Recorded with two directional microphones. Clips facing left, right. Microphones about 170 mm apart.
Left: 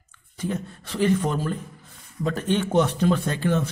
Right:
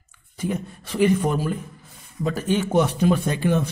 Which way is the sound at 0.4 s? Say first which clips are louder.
Right 2 dB; 10° right (ahead or behind).